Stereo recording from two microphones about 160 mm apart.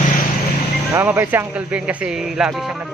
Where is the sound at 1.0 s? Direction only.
15° right (ahead or behind).